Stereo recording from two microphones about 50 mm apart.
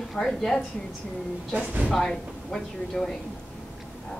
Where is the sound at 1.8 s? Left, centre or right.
Centre.